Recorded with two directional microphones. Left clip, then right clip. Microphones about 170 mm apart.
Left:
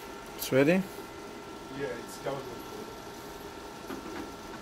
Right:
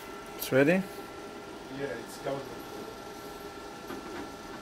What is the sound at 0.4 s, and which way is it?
Speech, 15° left (ahead or behind).